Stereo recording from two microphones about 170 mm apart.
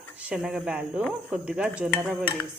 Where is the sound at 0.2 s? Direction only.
10° right (ahead or behind).